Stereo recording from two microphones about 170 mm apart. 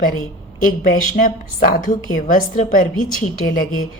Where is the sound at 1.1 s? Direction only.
55° left (ahead or behind).